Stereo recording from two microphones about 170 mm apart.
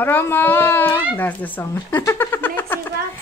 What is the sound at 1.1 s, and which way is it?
Speech, 10° left (ahead or behind).